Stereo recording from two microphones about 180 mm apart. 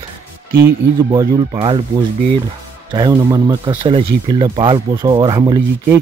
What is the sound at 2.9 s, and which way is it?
Speech, 25° right (ahead or behind).